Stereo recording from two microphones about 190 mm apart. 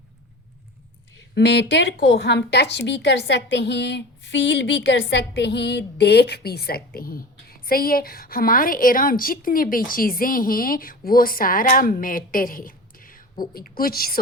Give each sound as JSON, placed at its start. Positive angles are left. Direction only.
{"t": 1.4, "sound": "a woman's voice", "side_deg": 65}